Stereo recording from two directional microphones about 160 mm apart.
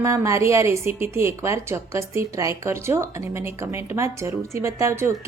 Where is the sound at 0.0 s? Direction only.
20° right (ahead or behind).